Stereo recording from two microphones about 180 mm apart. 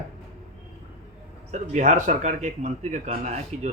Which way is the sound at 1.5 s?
40° right (ahead or behind).